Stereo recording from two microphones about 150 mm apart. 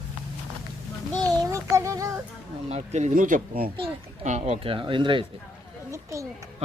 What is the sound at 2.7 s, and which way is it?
Speech, 50° right (ahead or behind).